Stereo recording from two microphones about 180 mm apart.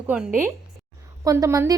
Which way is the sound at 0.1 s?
10° right (ahead or behind).